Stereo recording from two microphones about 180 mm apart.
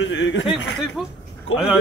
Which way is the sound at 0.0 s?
90° left.